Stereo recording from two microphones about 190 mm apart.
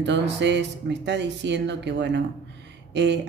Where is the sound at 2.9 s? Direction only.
65° right (ahead or behind).